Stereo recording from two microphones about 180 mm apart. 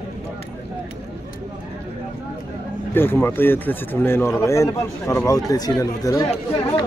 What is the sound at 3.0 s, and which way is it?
Speech, 10° left (ahead or behind).